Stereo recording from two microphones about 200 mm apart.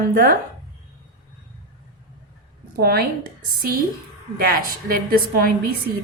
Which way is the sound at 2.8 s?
50° right (ahead or behind).